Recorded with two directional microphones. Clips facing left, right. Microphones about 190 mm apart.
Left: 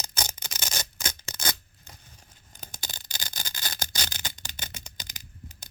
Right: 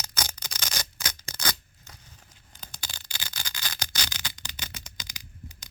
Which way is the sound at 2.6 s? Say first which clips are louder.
Left 2 dB; 45° left (ahead or behind).